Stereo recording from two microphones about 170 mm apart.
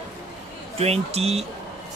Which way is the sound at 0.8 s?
35° right (ahead or behind).